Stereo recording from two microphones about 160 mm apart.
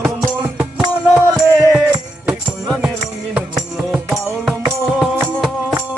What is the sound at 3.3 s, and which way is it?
Music, 5° right (ahead or behind).